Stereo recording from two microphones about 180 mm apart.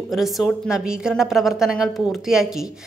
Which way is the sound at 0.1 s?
Centre (ahead or behind).